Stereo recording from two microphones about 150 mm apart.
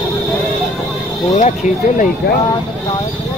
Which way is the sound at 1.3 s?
55° left (ahead or behind).